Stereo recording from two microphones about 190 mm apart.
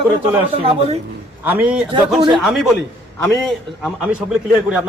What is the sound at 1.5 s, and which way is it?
A man's voice, 10° right (ahead or behind).